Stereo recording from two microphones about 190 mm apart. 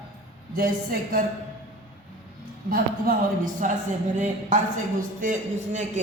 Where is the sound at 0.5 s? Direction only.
50° right (ahead or behind).